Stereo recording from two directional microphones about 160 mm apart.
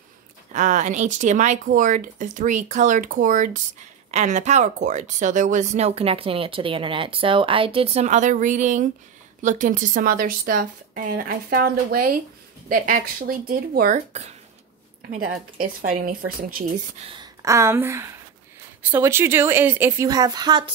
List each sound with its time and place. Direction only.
0.5 s a woman's voice: 50° right (ahead or behind)
13.9 s speech: 45° right (ahead or behind)
15.0 s a woman's voice: 65° right (ahead or behind)
16.6 s speech: 40° right (ahead or behind)
17.2 s speech: 20° right (ahead or behind)